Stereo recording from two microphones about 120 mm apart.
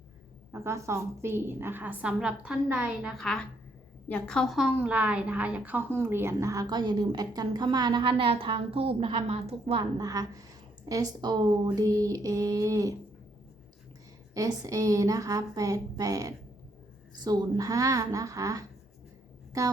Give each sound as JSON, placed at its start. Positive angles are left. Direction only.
{"t": 0.5, "sound": "a woman's voice", "side_deg": -20}
{"t": 3.2, "sound": "a woman's voice", "side_deg": 5}
{"t": 4.5, "sound": "a woman's voice", "side_deg": -10}
{"t": 10.0, "sound": "a woman's voice", "side_deg": -30}
{"t": 14.3, "sound": "speech", "side_deg": -30}